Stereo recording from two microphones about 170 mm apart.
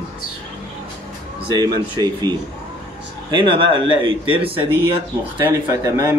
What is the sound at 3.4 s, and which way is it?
Speech, 30° right (ahead or behind).